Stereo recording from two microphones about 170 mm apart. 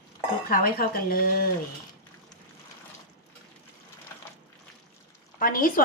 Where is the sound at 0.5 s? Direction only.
60° left (ahead or behind).